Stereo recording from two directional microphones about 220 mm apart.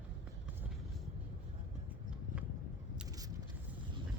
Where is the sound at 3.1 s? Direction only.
15° right (ahead or behind).